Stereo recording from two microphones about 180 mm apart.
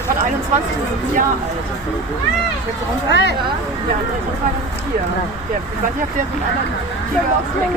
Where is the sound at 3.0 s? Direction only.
75° left (ahead or behind).